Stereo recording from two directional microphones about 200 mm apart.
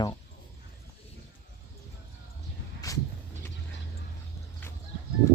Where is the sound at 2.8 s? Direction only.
20° left (ahead or behind).